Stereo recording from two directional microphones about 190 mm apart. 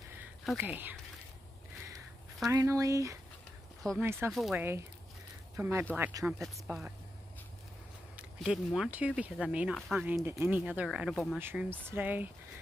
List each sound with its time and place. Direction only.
0.2 s a sound: 10° right (ahead or behind)
2.4 s speech: 15° right (ahead or behind)
4.3 s speech: centre (ahead or behind)
5.6 s speech: 15° right (ahead or behind)
8.4 s speech: centre (ahead or behind)
11.3 s speech: 10° right (ahead or behind)